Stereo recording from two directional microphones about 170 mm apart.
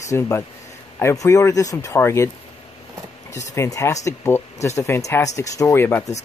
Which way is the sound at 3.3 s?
15° left (ahead or behind).